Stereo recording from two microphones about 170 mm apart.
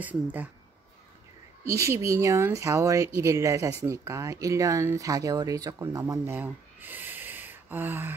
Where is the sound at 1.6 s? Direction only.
15° right (ahead or behind).